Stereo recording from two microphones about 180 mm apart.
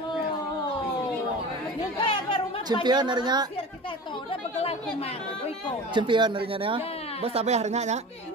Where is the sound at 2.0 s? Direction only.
30° left (ahead or behind).